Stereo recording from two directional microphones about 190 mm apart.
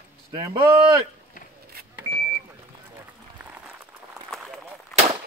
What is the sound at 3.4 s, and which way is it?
Applause, 10° right (ahead or behind).